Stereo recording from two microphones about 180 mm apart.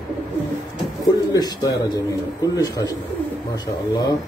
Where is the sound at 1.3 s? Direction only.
20° left (ahead or behind).